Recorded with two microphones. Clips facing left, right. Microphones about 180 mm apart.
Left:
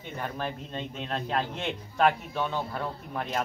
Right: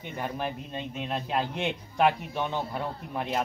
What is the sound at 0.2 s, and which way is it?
A man's voice, 15° right (ahead or behind).